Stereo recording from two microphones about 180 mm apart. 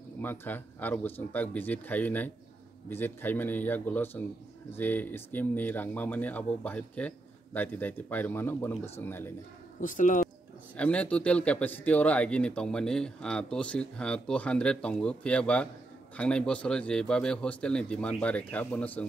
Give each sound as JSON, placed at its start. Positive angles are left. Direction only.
{"t": 0.2, "sound": "speech", "side_deg": 10}
{"t": 9.8, "sound": "speech", "side_deg": 45}
{"t": 10.8, "sound": "a man's voice", "side_deg": 5}